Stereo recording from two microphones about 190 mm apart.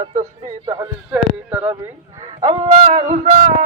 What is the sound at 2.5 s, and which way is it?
Speech, 30° right (ahead or behind).